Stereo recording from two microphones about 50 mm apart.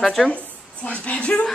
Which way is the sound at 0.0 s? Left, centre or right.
Centre.